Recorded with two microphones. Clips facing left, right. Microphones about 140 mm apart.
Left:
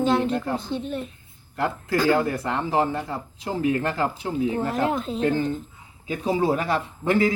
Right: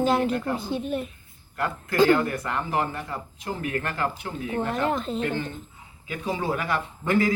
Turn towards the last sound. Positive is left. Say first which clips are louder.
# left 2 dB
turn(degrees=20)  # may be behind; listen again after turning